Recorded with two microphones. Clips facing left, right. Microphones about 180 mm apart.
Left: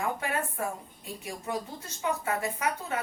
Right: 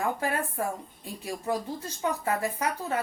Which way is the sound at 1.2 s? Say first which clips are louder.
Right 4 dB; 30° right (ahead or behind).